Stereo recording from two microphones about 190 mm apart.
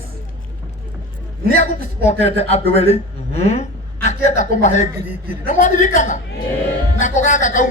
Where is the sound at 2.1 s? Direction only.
35° left (ahead or behind).